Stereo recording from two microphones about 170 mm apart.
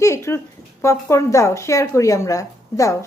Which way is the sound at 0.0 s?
15° left (ahead or behind).